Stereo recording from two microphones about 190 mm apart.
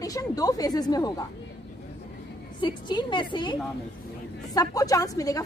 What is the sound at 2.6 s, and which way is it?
Speech, 25° left (ahead or behind).